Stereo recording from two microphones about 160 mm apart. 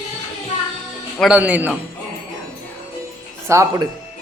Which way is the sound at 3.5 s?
15° right (ahead or behind).